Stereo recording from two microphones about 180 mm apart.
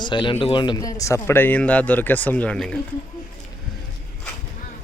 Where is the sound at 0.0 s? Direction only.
25° left (ahead or behind); by 2.8 s 5° left (ahead or behind).